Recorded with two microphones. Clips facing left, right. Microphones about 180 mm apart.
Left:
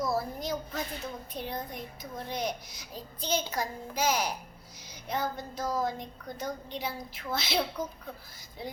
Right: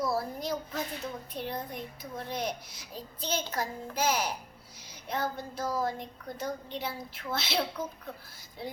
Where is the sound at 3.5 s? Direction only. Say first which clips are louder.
Even; 5° right (ahead or behind).